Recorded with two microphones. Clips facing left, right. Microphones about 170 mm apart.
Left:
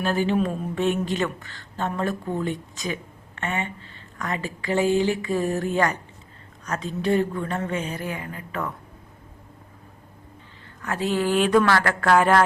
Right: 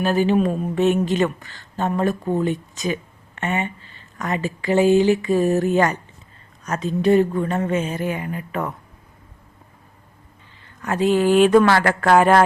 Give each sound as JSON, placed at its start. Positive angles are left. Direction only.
{"t": 0.0, "sound": "speech", "side_deg": -15}
{"t": 10.8, "sound": "speech", "side_deg": -20}